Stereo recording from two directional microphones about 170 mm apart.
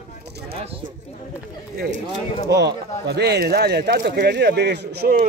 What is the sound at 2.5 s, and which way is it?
Speech, 85° right.